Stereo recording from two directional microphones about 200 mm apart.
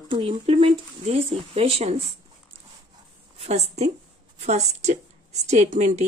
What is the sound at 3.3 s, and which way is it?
A woman's voice, 35° right (ahead or behind).